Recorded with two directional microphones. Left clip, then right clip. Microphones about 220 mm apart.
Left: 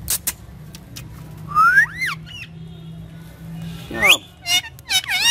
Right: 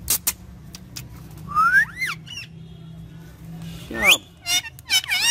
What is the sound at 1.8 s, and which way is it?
Music, centre (ahead or behind).